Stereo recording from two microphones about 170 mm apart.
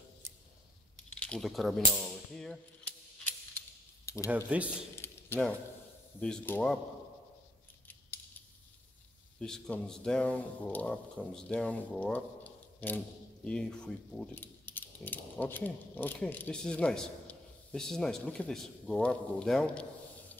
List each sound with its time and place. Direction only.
1.1 s cap gun: 5° left (ahead or behind)
4.0 s cutlery: 15° left (ahead or behind)
4.3 s speech: 10° right (ahead or behind)
4.9 s mechanisms: 15° left (ahead or behind)
6.1 s speech: 5° left (ahead or behind)
9.4 s speech: 5° left (ahead or behind)